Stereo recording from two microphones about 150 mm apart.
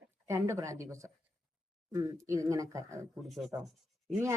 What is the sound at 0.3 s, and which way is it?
Speech, 20° right (ahead or behind).